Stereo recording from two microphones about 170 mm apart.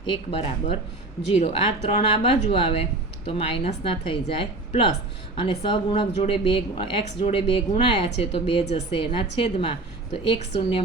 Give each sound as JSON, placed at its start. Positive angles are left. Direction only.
{"t": 0.0, "sound": "speech", "side_deg": 35}